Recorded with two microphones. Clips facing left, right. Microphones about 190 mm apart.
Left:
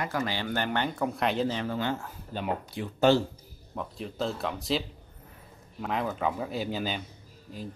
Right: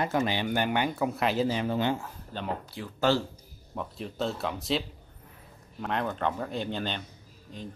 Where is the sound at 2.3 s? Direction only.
15° left (ahead or behind).